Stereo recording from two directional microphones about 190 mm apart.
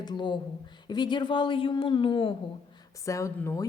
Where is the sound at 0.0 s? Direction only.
25° left (ahead or behind).